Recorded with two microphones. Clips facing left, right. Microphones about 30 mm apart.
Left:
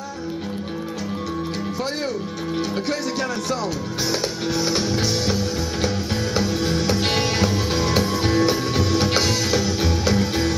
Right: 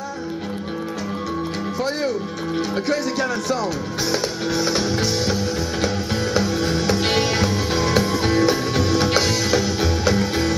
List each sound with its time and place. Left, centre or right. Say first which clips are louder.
2.7 s music: right 2 dB; centre